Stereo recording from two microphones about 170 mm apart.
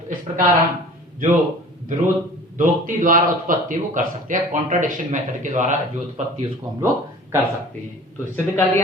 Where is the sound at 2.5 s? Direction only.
50° right (ahead or behind).